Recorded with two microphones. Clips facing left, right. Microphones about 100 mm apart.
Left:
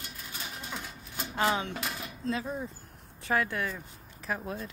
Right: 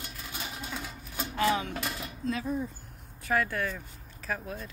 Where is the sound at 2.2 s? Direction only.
30° left (ahead or behind).